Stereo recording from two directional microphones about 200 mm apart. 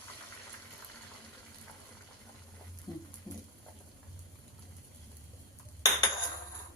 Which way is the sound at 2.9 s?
20° left (ahead or behind).